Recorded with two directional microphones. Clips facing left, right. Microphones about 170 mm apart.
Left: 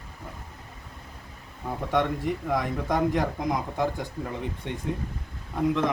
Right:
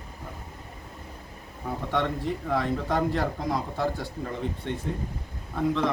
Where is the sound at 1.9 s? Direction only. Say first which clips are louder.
Left 2 dB; 15° left (ahead or behind).